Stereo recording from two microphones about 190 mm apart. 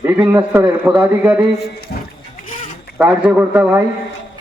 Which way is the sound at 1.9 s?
50° left (ahead or behind).